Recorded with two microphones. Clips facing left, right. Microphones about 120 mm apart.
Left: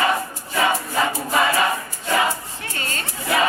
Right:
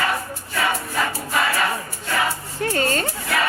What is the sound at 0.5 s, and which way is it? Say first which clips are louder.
Choir: left 3 dB; 20° left (ahead or behind).